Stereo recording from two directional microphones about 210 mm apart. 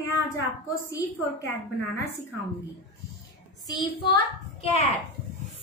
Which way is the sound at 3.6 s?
20° left (ahead or behind).